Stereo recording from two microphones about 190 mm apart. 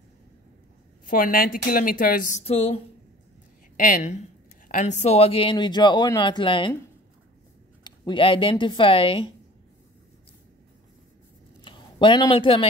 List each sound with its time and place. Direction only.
1.0 s speech: 50° left (ahead or behind); by 2.8 s 30° left (ahead or behind)
3.7 s a woman's voice: 45° left (ahead or behind)
5.0 s speech: 30° left (ahead or behind)
7.8 s speech: 25° left (ahead or behind)
11.6 s speech: 25° left (ahead or behind)